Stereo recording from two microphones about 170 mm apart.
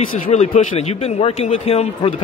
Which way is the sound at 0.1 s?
45° left (ahead or behind).